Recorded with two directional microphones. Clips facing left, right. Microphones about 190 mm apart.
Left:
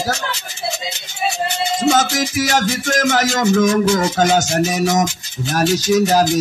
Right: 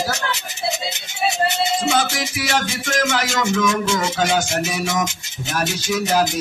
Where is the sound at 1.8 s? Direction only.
45° left (ahead or behind).